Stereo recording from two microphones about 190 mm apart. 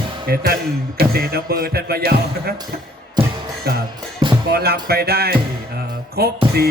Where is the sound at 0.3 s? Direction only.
55° right (ahead or behind).